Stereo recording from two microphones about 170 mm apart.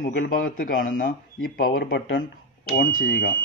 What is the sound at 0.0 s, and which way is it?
Speech, 55° left (ahead or behind).